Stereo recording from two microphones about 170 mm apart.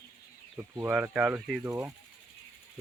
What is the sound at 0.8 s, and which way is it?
Speech, 10° right (ahead or behind).